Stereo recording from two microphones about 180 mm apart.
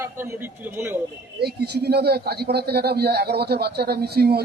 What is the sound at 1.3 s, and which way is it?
A man's voice, 65° right (ahead or behind).